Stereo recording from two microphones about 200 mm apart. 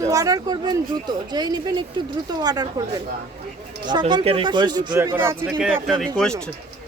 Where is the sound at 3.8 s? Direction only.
20° right (ahead or behind).